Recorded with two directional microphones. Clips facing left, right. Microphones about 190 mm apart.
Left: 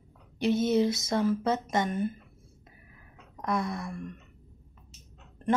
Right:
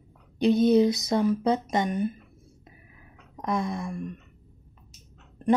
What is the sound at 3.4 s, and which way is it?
Speech, 20° right (ahead or behind).